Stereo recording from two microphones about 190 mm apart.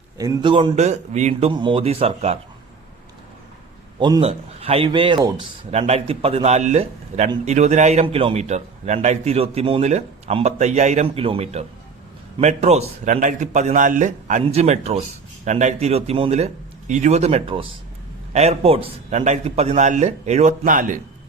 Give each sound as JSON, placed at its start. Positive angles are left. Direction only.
{"t": 0.2, "sound": "a man's voice", "side_deg": -20}
{"t": 0.8, "sound": "a man's voice", "side_deg": -35}
{"t": 4.0, "sound": "a man's voice", "side_deg": -25}